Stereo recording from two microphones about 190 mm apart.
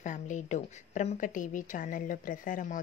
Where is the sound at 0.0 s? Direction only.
40° left (ahead or behind).